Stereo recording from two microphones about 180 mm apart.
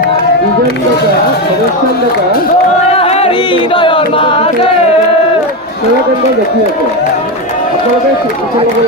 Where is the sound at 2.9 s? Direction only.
35° left (ahead or behind).